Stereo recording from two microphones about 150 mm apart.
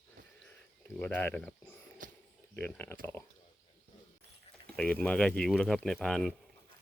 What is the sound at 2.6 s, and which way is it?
Speech, 10° left (ahead or behind).